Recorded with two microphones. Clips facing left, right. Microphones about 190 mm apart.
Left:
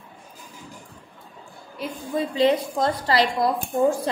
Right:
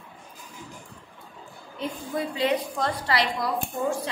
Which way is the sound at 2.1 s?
25° left (ahead or behind).